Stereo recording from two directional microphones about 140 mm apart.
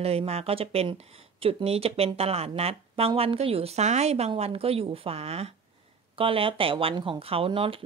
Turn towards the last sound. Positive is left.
turn(degrees=-40)  # may be behind; listen again after turning